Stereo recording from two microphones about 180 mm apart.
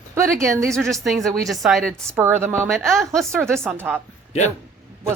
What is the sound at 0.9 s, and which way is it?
A woman's voice, centre (ahead or behind).